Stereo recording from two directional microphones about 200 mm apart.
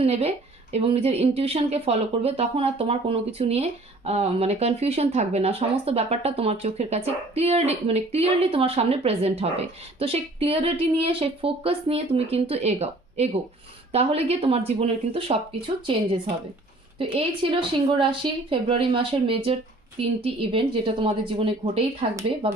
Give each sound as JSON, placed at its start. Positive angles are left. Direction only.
{"t": 0.0, "sound": "a woman's voice", "side_deg": -30}
{"t": 17.2, "sound": "a woman's voice", "side_deg": -25}